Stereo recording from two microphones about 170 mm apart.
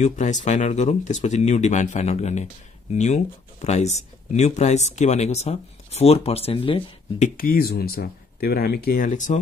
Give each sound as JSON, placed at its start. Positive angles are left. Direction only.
{"t": 0.0, "sound": "speech", "side_deg": 45}
{"t": 7.3, "sound": "speech", "side_deg": 60}